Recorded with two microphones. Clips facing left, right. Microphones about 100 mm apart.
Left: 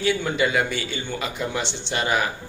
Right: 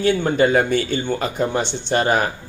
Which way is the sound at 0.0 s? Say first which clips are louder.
Right 6 dB; 50° right (ahead or behind).